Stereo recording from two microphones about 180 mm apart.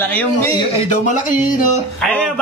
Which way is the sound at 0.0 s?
10° left (ahead or behind).